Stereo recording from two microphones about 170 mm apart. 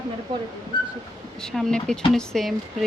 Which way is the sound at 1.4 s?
5° left (ahead or behind).